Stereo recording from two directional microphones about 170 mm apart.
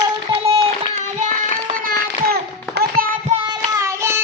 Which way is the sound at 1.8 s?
60° right (ahead or behind).